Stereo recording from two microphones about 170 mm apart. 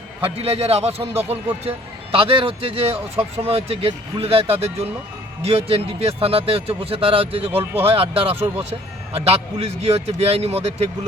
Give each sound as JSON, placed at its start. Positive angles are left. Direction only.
{"t": 0.2, "sound": "speech", "side_deg": -35}
{"t": 7.5, "sound": "speech", "side_deg": -15}
{"t": 7.9, "sound": "speech", "side_deg": -35}